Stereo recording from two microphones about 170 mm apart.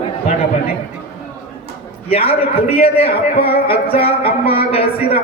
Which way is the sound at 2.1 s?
35° left (ahead or behind).